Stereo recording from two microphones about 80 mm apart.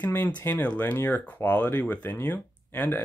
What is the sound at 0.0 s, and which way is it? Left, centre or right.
Speech, left.